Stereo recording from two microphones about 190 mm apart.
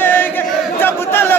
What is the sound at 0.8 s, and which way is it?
Crowd, 10° left (ahead or behind).